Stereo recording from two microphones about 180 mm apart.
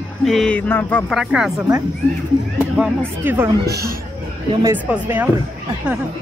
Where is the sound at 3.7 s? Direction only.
60° right (ahead or behind).